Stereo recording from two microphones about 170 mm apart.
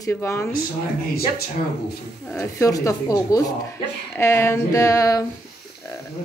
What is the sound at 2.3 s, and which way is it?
A woman's voice, 15° left (ahead or behind).